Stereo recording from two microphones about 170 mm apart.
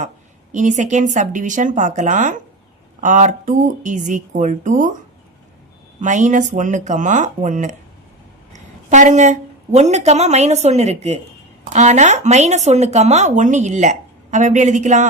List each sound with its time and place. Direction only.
0.5 s speech: 45° right (ahead or behind)
6.0 s a woman's voice: 45° right (ahead or behind)